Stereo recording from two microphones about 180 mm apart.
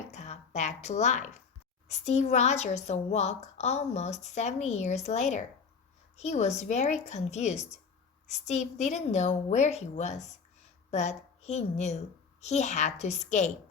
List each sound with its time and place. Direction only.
0.1 s a woman's voice: 40° left (ahead or behind)